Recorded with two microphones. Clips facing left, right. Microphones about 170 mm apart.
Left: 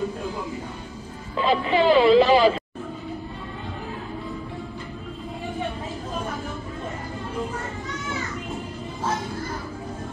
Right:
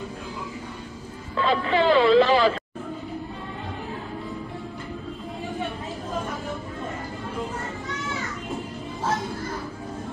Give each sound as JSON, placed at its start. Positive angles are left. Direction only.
{"t": 1.3, "sound": "speech", "side_deg": 20}